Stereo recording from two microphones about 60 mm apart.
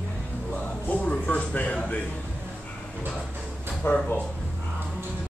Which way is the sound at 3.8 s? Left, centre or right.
Left.